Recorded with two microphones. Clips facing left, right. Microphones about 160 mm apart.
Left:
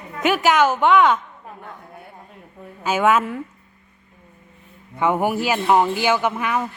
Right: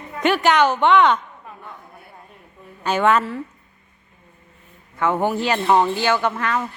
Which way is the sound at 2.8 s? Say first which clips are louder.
Even; 5° left (ahead or behind).